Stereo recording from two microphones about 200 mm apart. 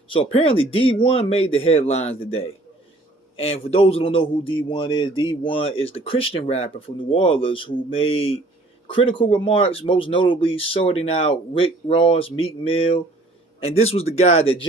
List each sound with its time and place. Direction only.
0.1 s a man's voice: 30° left (ahead or behind)